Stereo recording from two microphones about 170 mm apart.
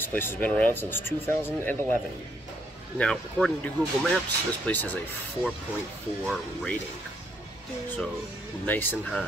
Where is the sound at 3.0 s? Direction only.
5° left (ahead or behind).